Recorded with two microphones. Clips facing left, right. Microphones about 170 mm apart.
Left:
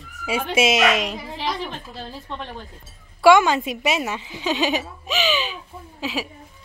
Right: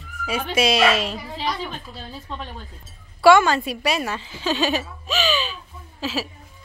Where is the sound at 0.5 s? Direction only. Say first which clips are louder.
Even; 20° left (ahead or behind).